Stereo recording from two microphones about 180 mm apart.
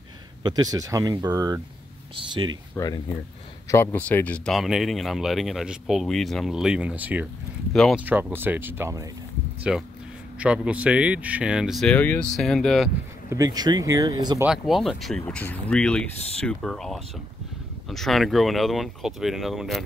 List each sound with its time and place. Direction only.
0.4 s speech: 20° right (ahead or behind)
2.7 s speech: 20° left (ahead or behind); by 7.2 s 10° right (ahead or behind)
7.7 s speech: centre (ahead or behind)
8.0 s speech: 10° right (ahead or behind)
13.3 s speech: 20° right (ahead or behind)
14.4 s speech: centre (ahead or behind)